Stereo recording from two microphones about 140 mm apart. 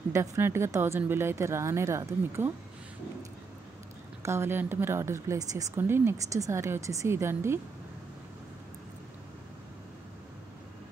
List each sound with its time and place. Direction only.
0.1 s speech: 20° right (ahead or behind)
4.2 s speech: 20° right (ahead or behind)